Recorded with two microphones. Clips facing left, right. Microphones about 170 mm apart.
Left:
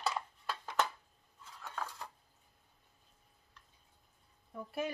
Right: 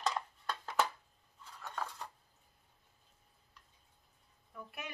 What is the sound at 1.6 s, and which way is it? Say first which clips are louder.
Cutlery: right 1 dB; centre (ahead or behind).